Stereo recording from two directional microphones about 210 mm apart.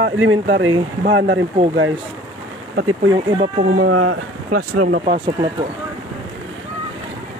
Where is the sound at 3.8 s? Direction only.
80° right.